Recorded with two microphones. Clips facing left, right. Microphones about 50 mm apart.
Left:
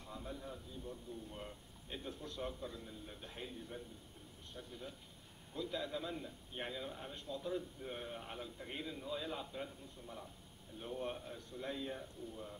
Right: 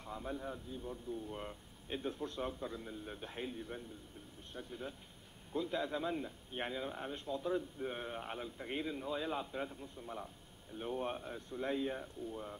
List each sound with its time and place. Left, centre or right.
0.0 s a man's voice: right